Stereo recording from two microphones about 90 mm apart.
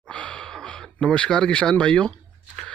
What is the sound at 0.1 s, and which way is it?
Gasp, 10° left (ahead or behind).